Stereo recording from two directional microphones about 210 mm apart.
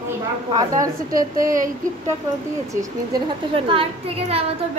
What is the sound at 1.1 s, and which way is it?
Speech, 40° right (ahead or behind).